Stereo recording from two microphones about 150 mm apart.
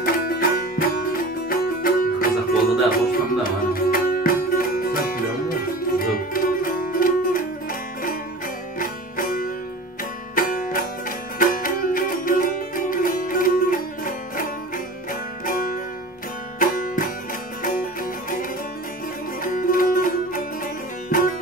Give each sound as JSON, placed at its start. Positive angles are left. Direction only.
{"t": 0.0, "sound": "music", "side_deg": 80}
{"t": 8.7, "sound": "music", "side_deg": 70}
{"t": 16.5, "sound": "music", "side_deg": 65}
{"t": 19.4, "sound": "music", "side_deg": 65}